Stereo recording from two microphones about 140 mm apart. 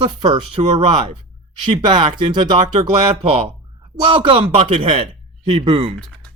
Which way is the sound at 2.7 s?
45° right (ahead or behind).